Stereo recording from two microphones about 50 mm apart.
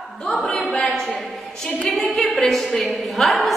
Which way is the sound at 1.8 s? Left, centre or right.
Centre.